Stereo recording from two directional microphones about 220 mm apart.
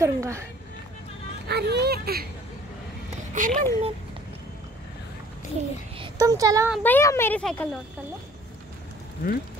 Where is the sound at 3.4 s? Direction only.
35° right (ahead or behind).